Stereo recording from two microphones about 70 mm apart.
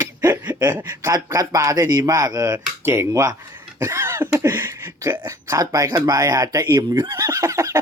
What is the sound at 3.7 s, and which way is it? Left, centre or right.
Cough, right.